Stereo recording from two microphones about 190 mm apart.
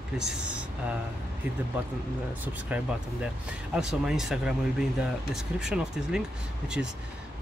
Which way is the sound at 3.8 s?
5° right (ahead or behind).